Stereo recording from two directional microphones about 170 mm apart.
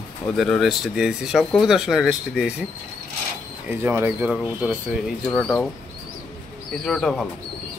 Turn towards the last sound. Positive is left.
turn(degrees=5)  # may be behind; listen again after turning